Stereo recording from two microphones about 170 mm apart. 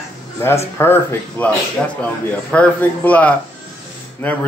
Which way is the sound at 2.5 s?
10° left (ahead or behind).